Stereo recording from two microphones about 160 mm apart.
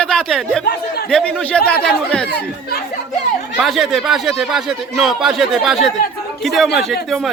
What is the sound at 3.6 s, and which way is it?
A man's voice, centre (ahead or behind).